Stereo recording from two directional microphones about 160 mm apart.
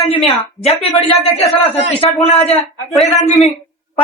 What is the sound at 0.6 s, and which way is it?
Speech, 40° left (ahead or behind).